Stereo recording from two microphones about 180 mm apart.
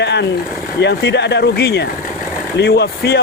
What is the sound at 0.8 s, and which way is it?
Speech, 70° left (ahead or behind).